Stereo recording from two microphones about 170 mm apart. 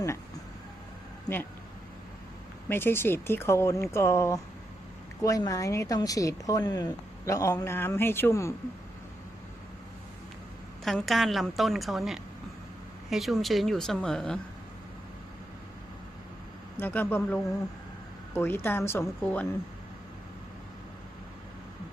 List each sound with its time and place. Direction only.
2.6 s speech: 15° left (ahead or behind)
10.8 s a woman's voice: centre (ahead or behind)
16.8 s speech: 10° left (ahead or behind)